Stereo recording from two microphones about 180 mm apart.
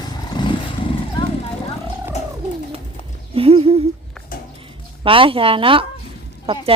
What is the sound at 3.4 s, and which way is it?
Humming, 30° right (ahead or behind).